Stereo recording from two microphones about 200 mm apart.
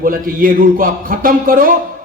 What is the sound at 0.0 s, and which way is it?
Speech, 45° right (ahead or behind).